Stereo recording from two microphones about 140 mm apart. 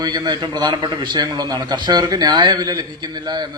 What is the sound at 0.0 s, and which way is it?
A man's voice, 30° right (ahead or behind).